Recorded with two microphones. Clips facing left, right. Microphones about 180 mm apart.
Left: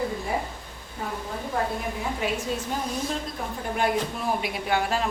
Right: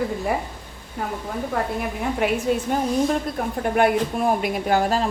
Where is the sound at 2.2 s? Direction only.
65° right (ahead or behind).